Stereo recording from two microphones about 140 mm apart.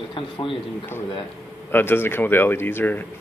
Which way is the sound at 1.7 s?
15° left (ahead or behind).